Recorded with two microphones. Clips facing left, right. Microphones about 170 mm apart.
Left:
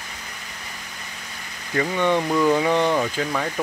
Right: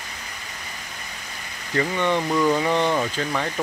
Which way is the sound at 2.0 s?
15° left (ahead or behind).